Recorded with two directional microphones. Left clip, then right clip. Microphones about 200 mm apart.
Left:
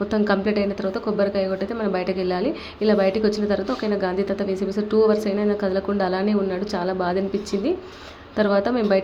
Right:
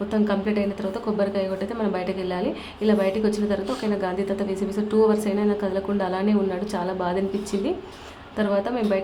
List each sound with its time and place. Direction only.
0.1 s speech: 15° left (ahead or behind)
8.4 s speech: 15° left (ahead or behind)